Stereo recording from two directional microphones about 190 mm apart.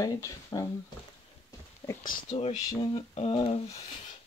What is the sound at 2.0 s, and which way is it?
Speech, 40° left (ahead or behind).